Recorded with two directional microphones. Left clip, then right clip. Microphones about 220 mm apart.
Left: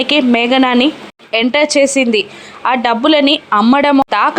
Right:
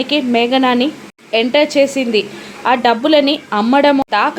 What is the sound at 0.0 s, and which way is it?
A woman's voice, 15° left (ahead or behind).